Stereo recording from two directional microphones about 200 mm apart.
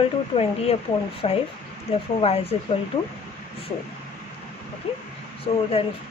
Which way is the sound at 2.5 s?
30° left (ahead or behind).